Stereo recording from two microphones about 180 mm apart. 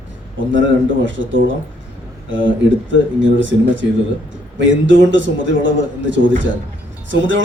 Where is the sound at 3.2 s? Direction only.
90° right.